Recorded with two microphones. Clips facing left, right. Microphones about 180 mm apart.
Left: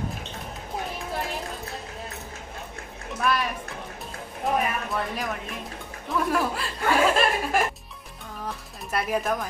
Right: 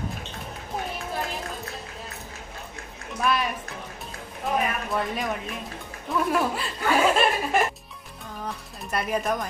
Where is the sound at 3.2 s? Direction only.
Centre (ahead or behind).